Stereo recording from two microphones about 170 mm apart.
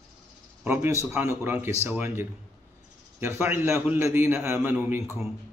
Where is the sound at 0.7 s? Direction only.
15° right (ahead or behind).